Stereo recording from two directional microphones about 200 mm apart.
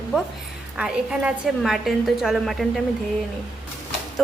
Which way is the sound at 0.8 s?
5° right (ahead or behind).